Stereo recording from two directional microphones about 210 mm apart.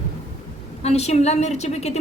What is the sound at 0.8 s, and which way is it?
A woman's voice, 30° left (ahead or behind).